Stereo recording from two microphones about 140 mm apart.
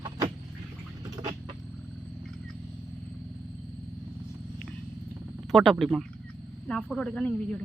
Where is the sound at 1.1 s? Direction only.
30° right (ahead or behind).